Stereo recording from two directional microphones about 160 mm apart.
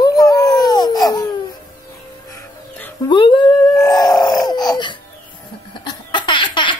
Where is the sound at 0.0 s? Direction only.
25° left (ahead or behind).